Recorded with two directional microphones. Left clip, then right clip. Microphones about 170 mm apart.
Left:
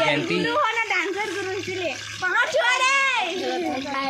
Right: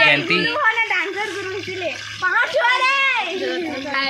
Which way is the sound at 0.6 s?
60° left (ahead or behind).